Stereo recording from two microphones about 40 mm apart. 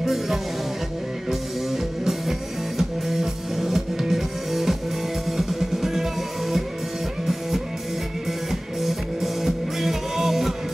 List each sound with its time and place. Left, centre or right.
0.0 s music: centre
8.5 s music: centre